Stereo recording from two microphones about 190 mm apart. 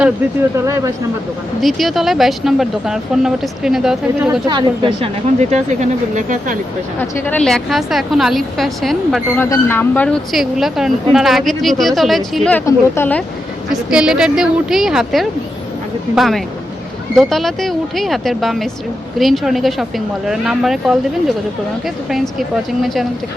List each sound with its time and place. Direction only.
0.5 s speech: 15° right (ahead or behind)
1.6 s speech: centre (ahead or behind)
4.3 s speech: 25° right (ahead or behind); by 6.6 s 45° right (ahead or behind)
7.0 s speech: 5° left (ahead or behind)
9.4 s speech: 10° left (ahead or behind)
13.7 s speech: 5° right (ahead or behind)